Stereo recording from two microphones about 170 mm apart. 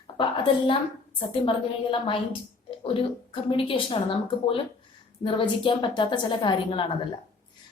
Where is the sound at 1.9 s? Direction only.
30° left (ahead or behind).